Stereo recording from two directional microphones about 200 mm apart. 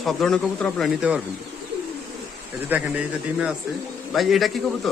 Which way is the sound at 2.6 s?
10° right (ahead or behind).